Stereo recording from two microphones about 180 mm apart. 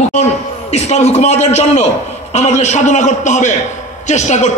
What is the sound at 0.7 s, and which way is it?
A man's voice, 35° left (ahead or behind).